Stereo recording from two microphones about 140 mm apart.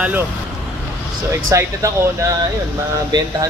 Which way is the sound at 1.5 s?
25° right (ahead or behind).